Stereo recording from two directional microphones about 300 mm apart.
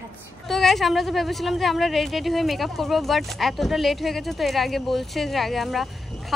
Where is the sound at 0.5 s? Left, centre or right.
Centre.